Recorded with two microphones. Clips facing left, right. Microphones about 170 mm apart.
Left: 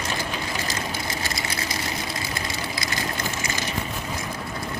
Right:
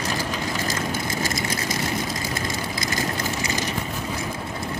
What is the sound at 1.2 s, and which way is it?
Engine, 45° right (ahead or behind).